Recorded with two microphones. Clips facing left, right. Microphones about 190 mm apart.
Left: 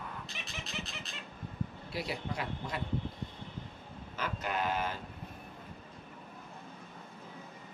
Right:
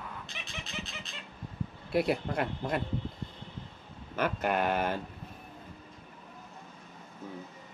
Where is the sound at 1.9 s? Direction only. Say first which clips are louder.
Right 9 dB; 55° right (ahead or behind).